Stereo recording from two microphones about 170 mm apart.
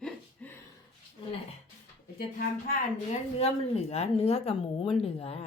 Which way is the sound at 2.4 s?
55° left (ahead or behind).